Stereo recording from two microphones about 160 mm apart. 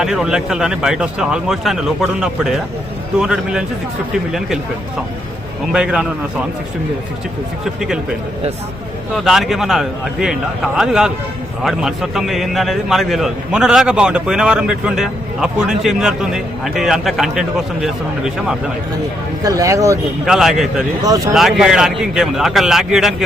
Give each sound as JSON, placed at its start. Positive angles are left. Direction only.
{"t": 0.0, "sound": "a man's voice", "side_deg": -5}
{"t": 5.7, "sound": "a man's voice", "side_deg": -5}
{"t": 7.6, "sound": "a man's voice", "side_deg": -5}
{"t": 9.1, "sound": "a man's voice", "side_deg": 0}
{"t": 19.4, "sound": "speech", "side_deg": -20}
{"t": 20.2, "sound": "a man's voice", "side_deg": -5}